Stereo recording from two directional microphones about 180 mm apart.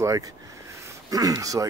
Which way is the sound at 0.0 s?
15° right (ahead or behind).